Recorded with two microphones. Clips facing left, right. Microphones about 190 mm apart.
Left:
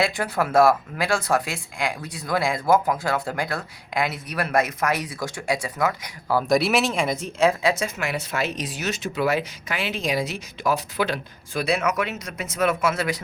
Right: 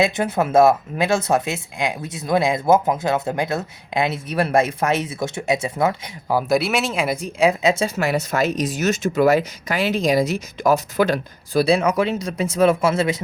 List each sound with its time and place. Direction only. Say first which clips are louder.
0.0 s speech: right 4 dB; 20° right (ahead or behind)
6.5 s speech: left 1 dB; centre (ahead or behind); by 13.2 s 25° right (ahead or behind)